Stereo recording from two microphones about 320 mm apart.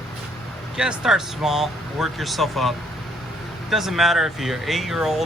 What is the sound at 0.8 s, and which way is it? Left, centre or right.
Speech, centre.